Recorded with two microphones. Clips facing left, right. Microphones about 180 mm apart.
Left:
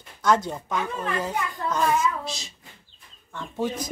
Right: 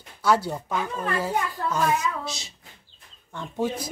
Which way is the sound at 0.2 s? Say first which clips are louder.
Even; 5° right (ahead or behind).